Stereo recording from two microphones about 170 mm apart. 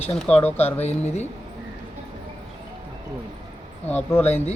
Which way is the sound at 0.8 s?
40° left (ahead or behind).